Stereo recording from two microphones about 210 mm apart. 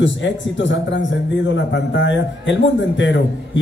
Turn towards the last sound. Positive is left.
turn(degrees=60)  # may be behind; listen again after turning